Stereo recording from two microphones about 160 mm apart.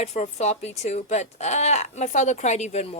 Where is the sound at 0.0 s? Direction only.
45° left (ahead or behind).